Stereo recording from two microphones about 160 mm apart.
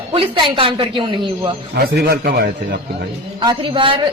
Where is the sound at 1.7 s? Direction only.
80° right.